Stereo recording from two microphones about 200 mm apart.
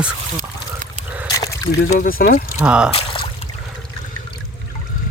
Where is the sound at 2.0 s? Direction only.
45° left (ahead or behind).